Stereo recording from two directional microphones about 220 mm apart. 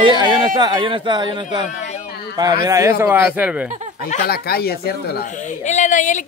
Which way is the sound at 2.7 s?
15° right (ahead or behind).